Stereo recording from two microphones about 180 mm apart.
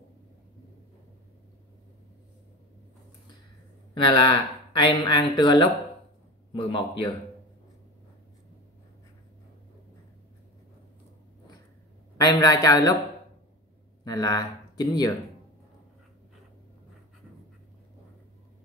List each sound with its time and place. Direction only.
3.9 s speech: 25° left (ahead or behind)
12.2 s speech: 20° left (ahead or behind)
14.0 s speech: 20° left (ahead or behind)